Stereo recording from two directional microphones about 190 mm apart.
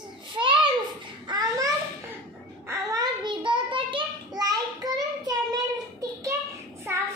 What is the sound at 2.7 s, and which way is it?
Child singing, 20° right (ahead or behind).